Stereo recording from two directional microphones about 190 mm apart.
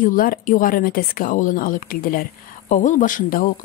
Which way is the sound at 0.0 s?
45° left (ahead or behind).